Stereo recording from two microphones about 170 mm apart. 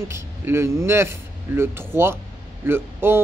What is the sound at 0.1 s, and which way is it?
Speech, 15° right (ahead or behind).